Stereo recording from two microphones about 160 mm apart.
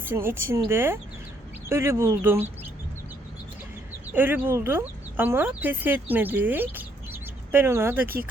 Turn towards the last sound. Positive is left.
turn(degrees=-15)  # may be behind; listen again after turning